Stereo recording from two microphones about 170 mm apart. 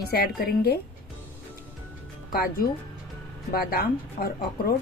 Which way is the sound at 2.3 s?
60° left (ahead or behind).